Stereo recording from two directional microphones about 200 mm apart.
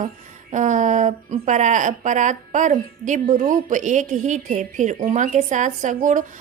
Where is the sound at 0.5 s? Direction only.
40° right (ahead or behind).